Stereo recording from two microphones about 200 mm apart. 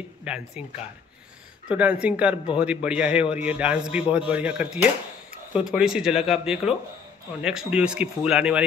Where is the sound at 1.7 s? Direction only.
5° right (ahead or behind).